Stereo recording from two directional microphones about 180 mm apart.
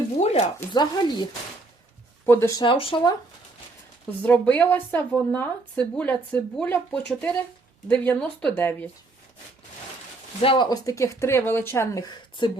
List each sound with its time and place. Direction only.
0.2 s a sound: 40° left (ahead or behind)
0.7 s speech: 25° left (ahead or behind)
2.2 s speech: 15° left (ahead or behind)
2.6 s speech: 30° left (ahead or behind)
4.2 s speech: 10° left (ahead or behind)
10.4 s speech: 25° left (ahead or behind)